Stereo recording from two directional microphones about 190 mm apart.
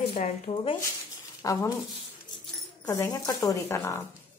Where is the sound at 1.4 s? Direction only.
15° left (ahead or behind).